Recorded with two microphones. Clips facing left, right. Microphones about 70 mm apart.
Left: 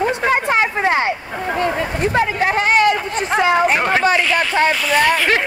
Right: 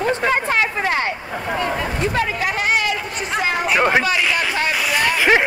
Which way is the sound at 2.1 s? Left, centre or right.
Left.